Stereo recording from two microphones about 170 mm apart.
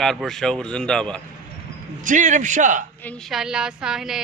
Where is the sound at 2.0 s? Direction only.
50° right (ahead or behind).